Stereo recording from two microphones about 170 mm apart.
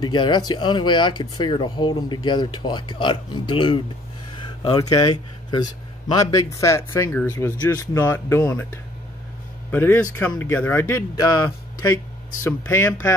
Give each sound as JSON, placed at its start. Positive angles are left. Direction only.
{"t": 0.0, "sound": "a man's voice", "side_deg": 25}